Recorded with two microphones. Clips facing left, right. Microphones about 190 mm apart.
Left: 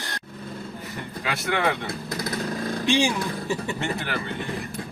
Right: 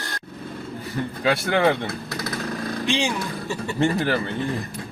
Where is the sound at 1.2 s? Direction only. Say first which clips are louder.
Right 6 dB; 30° right (ahead or behind).